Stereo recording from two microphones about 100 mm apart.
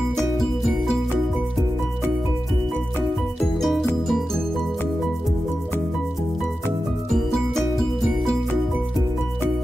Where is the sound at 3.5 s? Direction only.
Centre (ahead or behind).